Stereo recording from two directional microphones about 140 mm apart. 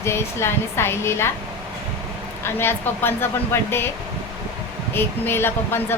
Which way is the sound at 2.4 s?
15° left (ahead or behind).